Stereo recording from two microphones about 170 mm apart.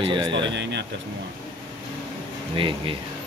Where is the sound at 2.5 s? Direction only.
30° right (ahead or behind).